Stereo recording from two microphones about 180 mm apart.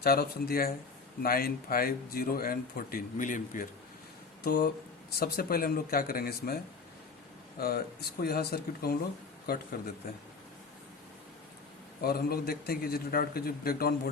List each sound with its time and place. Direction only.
0.0 s a man's voice: 60° left (ahead or behind)
7.6 s a man's voice: 60° left (ahead or behind)
12.0 s a man's voice: 55° left (ahead or behind)